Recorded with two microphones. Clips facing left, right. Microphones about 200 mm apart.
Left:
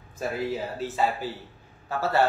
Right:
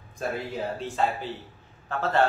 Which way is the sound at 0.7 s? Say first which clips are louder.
Even; 5° left (ahead or behind).